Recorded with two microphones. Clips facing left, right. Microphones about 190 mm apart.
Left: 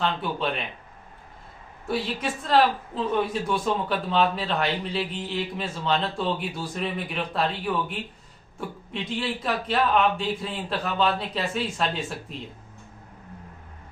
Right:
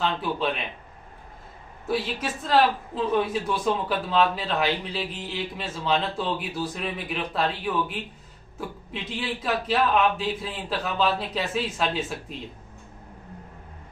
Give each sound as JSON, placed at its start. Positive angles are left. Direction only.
{"t": 0.0, "sound": "a man's voice", "side_deg": 0}
{"t": 1.9, "sound": "a man's voice", "side_deg": 0}